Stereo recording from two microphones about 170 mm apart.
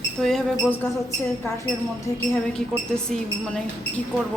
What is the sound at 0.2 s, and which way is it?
Speech, centre (ahead or behind).